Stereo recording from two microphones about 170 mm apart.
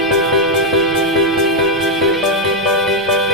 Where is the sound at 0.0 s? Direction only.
Centre (ahead or behind).